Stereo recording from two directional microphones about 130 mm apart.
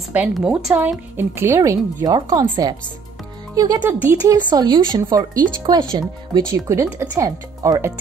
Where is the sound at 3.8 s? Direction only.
15° right (ahead or behind).